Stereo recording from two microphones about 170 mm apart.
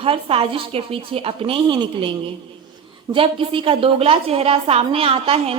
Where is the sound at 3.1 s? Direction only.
30° right (ahead or behind).